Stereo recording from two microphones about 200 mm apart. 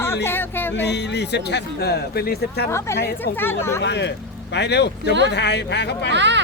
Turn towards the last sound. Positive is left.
turn(degrees=-60)  # may be behind; listen again after turning